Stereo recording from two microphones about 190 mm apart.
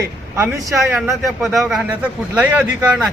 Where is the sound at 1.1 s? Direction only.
Centre (ahead or behind).